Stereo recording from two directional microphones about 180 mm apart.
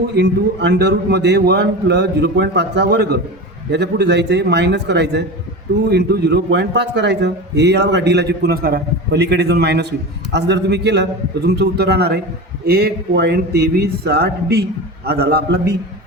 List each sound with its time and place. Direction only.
0.0 s a man's voice: 70° right (ahead or behind)